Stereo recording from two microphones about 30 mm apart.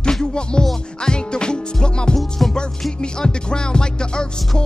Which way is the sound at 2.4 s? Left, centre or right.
Centre.